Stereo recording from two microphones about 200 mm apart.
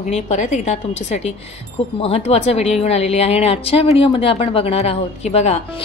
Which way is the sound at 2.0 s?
30° left (ahead or behind).